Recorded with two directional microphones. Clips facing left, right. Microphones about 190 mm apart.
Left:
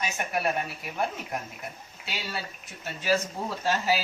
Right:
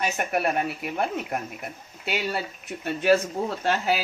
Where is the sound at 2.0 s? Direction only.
60° right (ahead or behind).